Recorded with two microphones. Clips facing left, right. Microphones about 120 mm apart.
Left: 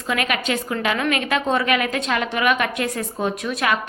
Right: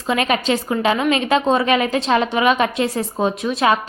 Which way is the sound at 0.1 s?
25° right (ahead or behind).